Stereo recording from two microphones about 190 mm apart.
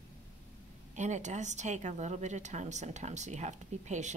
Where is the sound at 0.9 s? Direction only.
40° right (ahead or behind).